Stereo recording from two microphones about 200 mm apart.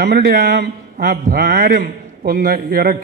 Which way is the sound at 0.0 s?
50° right (ahead or behind).